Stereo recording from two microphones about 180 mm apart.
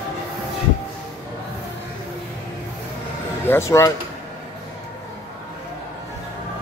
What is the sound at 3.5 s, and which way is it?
Speech, 10° left (ahead or behind).